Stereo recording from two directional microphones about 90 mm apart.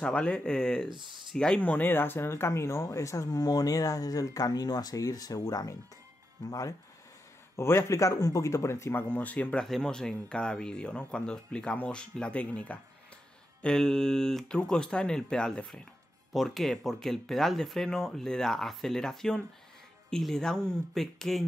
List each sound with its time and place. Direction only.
0.0 s speech: 10° left (ahead or behind)
0.8 s speech: 60° right (ahead or behind)
1.3 s speech: 5° left (ahead or behind)
1.6 s speech: 20° left (ahead or behind); by 5.8 s 40° left (ahead or behind)
7.5 s speech: 30° left (ahead or behind)
13.6 s speech: 5° left (ahead or behind)